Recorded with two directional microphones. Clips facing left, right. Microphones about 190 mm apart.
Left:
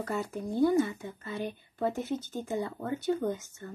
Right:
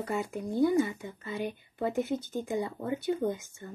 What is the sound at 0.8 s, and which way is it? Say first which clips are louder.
Speech: even; 15° right (ahead or behind).